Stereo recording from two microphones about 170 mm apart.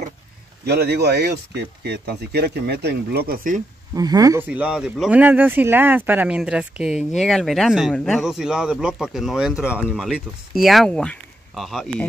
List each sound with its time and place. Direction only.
0.7 s speech: 70° right (ahead or behind); by 3.6 s 55° right (ahead or behind)
3.9 s speech: 20° right (ahead or behind)
4.5 s speech: 5° right (ahead or behind)